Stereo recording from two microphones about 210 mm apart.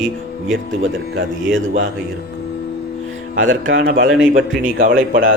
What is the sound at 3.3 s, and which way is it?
Speech, 65° right (ahead or behind).